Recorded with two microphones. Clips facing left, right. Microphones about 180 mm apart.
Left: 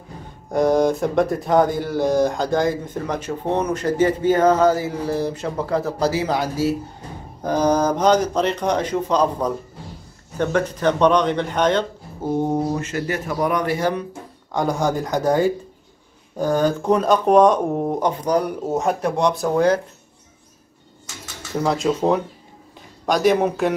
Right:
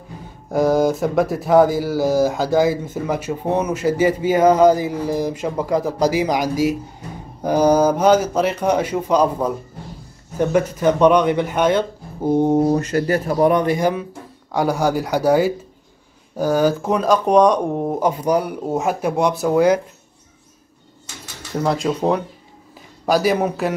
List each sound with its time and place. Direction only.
0.5 s speech: 5° right (ahead or behind)
12.4 s speech: 20° right (ahead or behind)
12.7 s speech: 40° right (ahead or behind); by 19.8 s 10° right (ahead or behind)
21.6 s speech: centre (ahead or behind)